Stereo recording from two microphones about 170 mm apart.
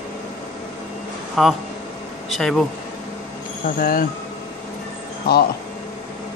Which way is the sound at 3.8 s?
60° left (ahead or behind).